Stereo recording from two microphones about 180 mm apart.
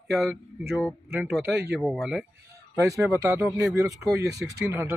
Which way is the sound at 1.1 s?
10° right (ahead or behind).